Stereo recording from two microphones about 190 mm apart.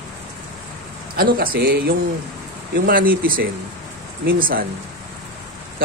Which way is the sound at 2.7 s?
50° right (ahead or behind).